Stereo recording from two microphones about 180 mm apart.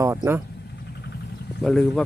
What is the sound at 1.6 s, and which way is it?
Speech, centre (ahead or behind).